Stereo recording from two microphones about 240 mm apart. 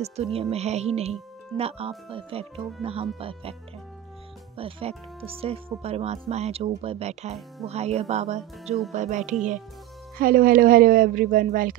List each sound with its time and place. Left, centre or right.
0.0 s speech: right
4.6 s speech: right